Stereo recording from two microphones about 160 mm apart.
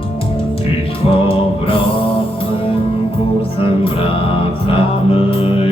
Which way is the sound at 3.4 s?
35° left (ahead or behind).